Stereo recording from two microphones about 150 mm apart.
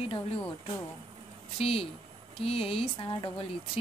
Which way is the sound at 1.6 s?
40° left (ahead or behind).